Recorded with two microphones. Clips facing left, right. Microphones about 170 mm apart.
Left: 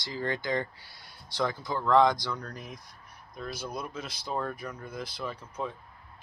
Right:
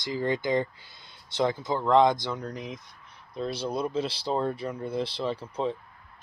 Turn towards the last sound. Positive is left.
turn(degrees=-30)  # may be behind; listen again after turning